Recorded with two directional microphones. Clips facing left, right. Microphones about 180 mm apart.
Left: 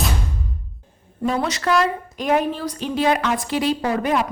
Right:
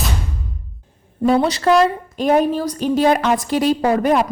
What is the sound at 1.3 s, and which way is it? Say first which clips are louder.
A woman's voice: right 6 dB; 30° right (ahead or behind).